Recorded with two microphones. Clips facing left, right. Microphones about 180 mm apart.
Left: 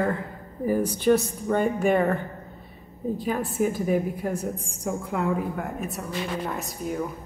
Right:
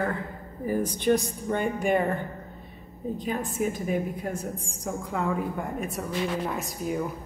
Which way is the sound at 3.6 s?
45° left (ahead or behind).